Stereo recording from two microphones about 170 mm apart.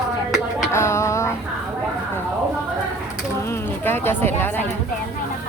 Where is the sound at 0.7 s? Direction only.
15° left (ahead or behind).